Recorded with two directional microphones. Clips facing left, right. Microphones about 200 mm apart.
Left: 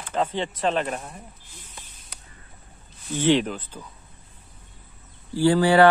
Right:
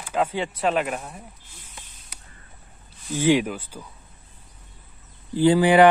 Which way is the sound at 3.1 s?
10° right (ahead or behind).